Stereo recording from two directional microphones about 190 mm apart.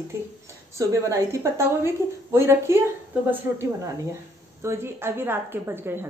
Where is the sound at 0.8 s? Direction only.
15° right (ahead or behind).